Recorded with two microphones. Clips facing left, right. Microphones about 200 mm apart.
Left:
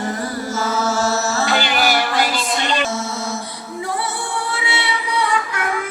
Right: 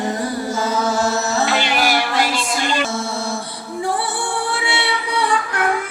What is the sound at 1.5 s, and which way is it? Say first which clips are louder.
Music: even; centre (ahead or behind).